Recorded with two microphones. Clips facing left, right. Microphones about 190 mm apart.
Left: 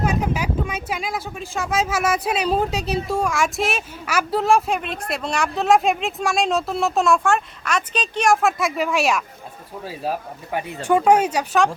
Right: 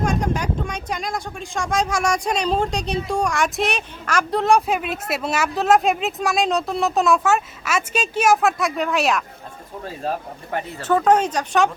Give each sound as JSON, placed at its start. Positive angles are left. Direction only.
{"t": 0.0, "sound": "speech", "side_deg": 5}